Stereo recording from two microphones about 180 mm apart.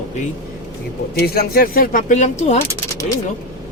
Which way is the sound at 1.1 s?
60° left (ahead or behind).